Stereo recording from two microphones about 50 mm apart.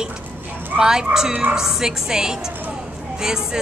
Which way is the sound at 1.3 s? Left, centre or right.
Right.